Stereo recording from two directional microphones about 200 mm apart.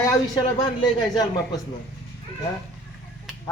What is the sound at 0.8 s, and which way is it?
Speech, 20° left (ahead or behind).